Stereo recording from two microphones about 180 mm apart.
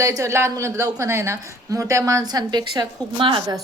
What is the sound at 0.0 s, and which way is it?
Speech, 15° right (ahead or behind).